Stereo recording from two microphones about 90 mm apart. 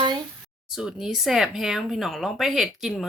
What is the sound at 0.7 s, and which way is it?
Speech, 5° right (ahead or behind).